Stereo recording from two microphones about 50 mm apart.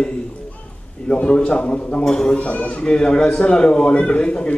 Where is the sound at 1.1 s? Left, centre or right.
Left.